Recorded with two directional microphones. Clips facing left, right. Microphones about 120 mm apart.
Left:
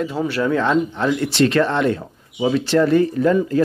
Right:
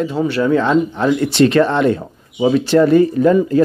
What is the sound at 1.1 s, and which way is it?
Speech, 20° right (ahead or behind).